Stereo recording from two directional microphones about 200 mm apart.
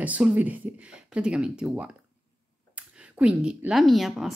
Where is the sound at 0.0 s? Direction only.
5° right (ahead or behind).